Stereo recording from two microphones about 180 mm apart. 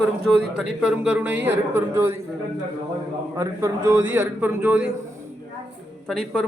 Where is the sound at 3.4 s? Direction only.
20° right (ahead or behind).